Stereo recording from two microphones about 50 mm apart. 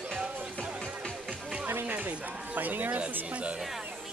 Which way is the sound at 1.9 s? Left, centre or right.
Right.